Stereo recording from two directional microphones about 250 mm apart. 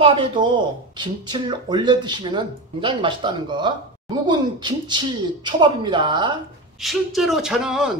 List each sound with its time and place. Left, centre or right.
0.0 s speech: right
6.8 s a man's voice: centre